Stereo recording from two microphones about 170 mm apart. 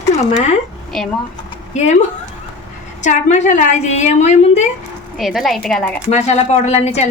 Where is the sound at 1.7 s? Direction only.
40° left (ahead or behind).